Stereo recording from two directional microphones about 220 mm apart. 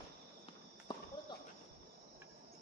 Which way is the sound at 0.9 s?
20° left (ahead or behind).